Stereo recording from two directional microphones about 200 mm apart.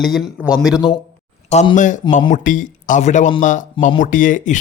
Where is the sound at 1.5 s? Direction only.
35° left (ahead or behind).